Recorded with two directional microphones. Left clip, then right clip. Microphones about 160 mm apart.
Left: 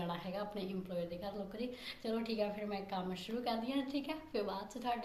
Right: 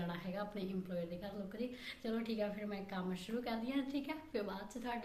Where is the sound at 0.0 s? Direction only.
20° right (ahead or behind).